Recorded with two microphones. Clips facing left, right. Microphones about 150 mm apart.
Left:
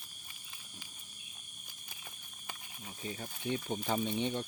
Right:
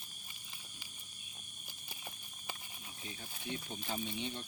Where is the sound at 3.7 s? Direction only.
55° left (ahead or behind).